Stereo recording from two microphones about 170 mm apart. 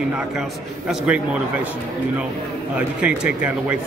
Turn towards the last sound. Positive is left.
turn(degrees=-5)  # may be behind; listen again after turning